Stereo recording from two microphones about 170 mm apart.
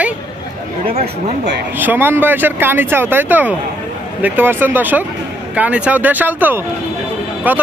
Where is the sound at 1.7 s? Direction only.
10° right (ahead or behind).